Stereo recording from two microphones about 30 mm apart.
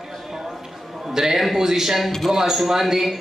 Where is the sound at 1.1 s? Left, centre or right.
Centre.